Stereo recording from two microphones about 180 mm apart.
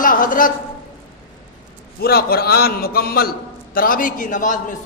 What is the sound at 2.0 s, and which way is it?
A man's voice, 55° left (ahead or behind).